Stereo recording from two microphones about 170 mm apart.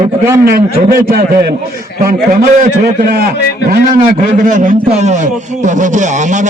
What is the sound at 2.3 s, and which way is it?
A man's voice, 55° right (ahead or behind).